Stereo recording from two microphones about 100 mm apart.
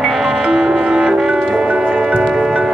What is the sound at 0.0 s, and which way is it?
Music, 5° right (ahead or behind).